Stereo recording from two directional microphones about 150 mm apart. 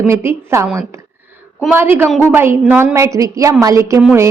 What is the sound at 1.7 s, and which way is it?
A woman's voice, 15° right (ahead or behind).